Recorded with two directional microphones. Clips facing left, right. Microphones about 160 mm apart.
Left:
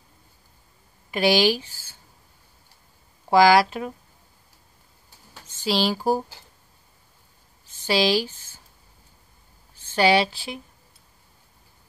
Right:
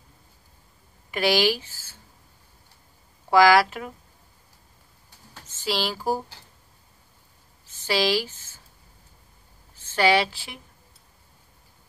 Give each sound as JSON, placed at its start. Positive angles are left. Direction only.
{"t": 1.1, "sound": "speech", "side_deg": 20}
{"t": 3.3, "sound": "speech", "side_deg": 20}
{"t": 5.6, "sound": "speech", "side_deg": 20}
{"t": 7.8, "sound": "speech", "side_deg": 20}
{"t": 9.9, "sound": "speech", "side_deg": 20}